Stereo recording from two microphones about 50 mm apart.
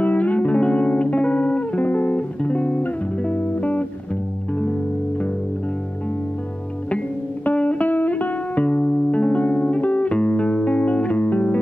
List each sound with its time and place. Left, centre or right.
0.0 s music: left
7.4 s music: left